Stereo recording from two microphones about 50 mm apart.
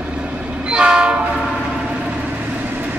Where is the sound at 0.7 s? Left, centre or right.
Centre.